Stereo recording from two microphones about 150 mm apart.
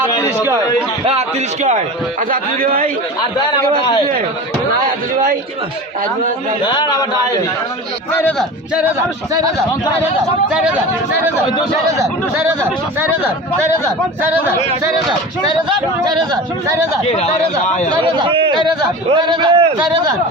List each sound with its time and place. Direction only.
0.3 s speech: 15° right (ahead or behind)
2.3 s a man's voice: 70° right (ahead or behind)
6.7 s speech: 30° left (ahead or behind)
8.4 s speech: 5° right (ahead or behind)
10.5 s speech: 5° right (ahead or behind)
16.3 s speech: 20° right (ahead or behind)
17.9 s a man's voice: 30° right (ahead or behind)